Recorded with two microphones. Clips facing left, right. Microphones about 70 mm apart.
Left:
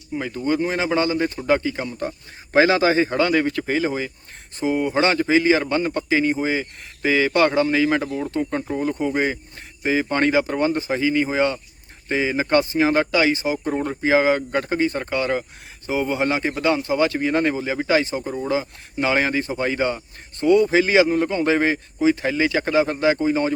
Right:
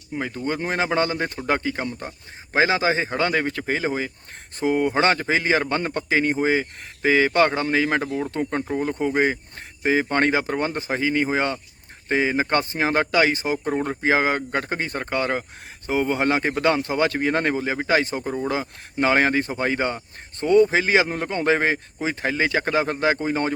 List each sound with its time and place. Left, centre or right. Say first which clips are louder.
0.4 s a man's voice: left 3 dB; right
2.0 s speech: left 7 dB; centre; by 4.1 s right
4.6 s a man's voice: even; right